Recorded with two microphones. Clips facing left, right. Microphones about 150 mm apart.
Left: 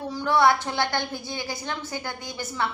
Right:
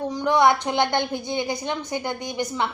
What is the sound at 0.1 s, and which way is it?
A woman's voice, 15° right (ahead or behind).